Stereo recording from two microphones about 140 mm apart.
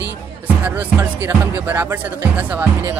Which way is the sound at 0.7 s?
15° right (ahead or behind).